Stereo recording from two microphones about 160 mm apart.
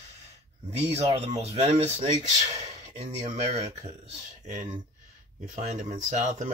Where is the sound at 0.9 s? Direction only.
40° right (ahead or behind).